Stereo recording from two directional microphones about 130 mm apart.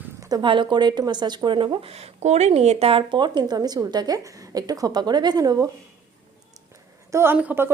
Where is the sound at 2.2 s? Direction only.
55° right (ahead or behind); by 5.6 s 30° right (ahead or behind).